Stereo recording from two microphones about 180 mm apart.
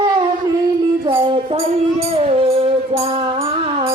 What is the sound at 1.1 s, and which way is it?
Music, 30° right (ahead or behind).